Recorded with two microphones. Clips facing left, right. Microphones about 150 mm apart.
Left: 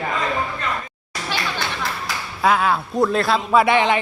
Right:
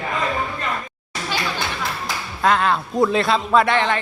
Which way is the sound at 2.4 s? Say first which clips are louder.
Even; 5° left (ahead or behind).